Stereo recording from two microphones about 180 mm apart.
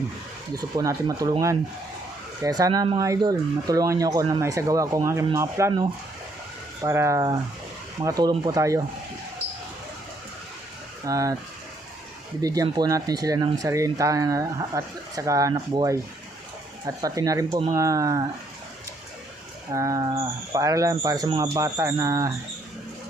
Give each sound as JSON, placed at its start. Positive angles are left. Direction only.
{"t": 0.5, "sound": "speech", "side_deg": -20}
{"t": 6.8, "sound": "speech", "side_deg": -15}
{"t": 11.0, "sound": "speech", "side_deg": -20}
{"t": 12.4, "sound": "speech", "side_deg": -20}
{"t": 19.7, "sound": "speech", "side_deg": -20}